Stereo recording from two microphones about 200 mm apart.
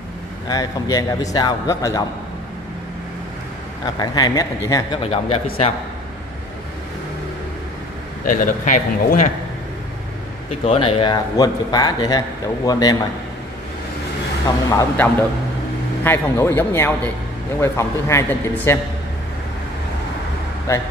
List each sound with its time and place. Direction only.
0.5 s a man's voice: 20° left (ahead or behind)
3.8 s speech: 20° left (ahead or behind)
5.0 s speech: 30° left (ahead or behind)
8.3 s a man's voice: 40° left (ahead or behind)
10.6 s speech: 30° left (ahead or behind)
14.7 s a man's voice: 15° left (ahead or behind)
20.7 s a man's voice: 15° left (ahead or behind)